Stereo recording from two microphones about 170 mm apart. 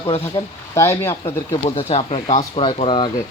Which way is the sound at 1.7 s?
35° left (ahead or behind).